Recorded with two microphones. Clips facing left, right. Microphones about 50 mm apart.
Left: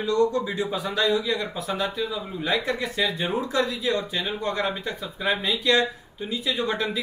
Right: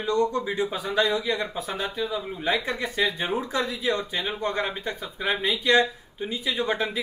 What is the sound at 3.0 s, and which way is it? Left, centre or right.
Speech, right.